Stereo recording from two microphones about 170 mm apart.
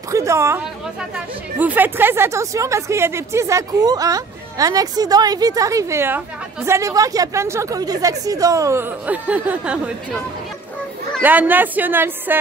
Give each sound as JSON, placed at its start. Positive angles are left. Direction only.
{"t": 0.1, "sound": "speech", "side_deg": -15}
{"t": 11.1, "sound": "speech", "side_deg": -10}